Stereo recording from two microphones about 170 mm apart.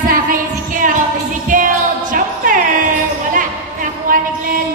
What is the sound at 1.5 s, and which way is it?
Music, 50° right (ahead or behind).